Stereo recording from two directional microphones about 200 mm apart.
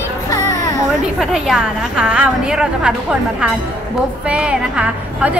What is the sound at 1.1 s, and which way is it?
A woman's voice, centre (ahead or behind).